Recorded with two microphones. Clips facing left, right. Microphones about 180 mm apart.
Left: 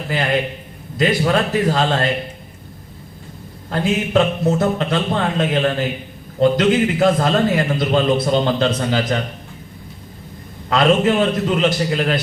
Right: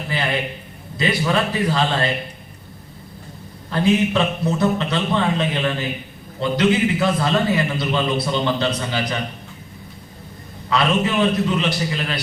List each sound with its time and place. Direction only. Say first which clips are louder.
0.1 s a man's voice: left 4 dB; 50° left (ahead or behind)
3.7 s a man's voice: right 1 dB; 50° left (ahead or behind)
10.7 s a man's voice: left 5 dB; 50° left (ahead or behind)